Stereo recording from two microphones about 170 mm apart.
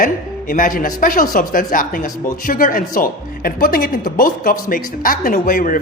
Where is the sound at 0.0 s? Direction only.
55° left (ahead or behind).